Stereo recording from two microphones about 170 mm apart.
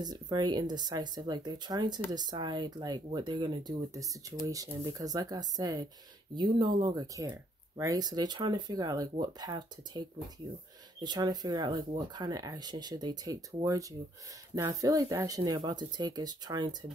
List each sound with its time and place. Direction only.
0.0 s speech: 25° right (ahead or behind)